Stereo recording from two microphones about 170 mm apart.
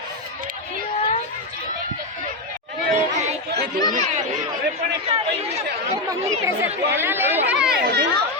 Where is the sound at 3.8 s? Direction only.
25° left (ahead or behind).